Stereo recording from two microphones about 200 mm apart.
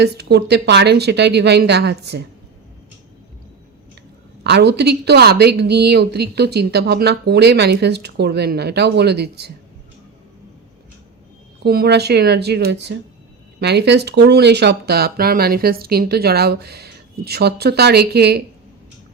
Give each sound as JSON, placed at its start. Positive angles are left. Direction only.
{"t": 0.0, "sound": "a woman's voice", "side_deg": -55}
{"t": 4.4, "sound": "a woman's voice", "side_deg": -55}
{"t": 11.6, "sound": "a woman's voice", "side_deg": -50}